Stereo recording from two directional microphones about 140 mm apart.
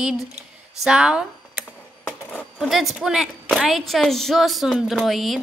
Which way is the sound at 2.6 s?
Centre (ahead or behind).